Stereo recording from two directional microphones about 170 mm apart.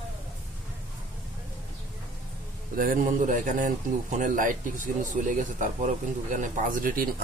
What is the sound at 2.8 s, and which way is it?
A man's voice, 50° right (ahead or behind).